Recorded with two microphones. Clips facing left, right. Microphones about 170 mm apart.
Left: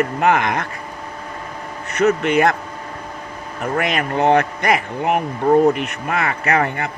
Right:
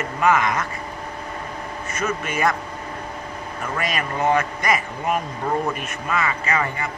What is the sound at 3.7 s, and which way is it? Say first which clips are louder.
Speech: left 6 dB; 60° left (ahead or behind).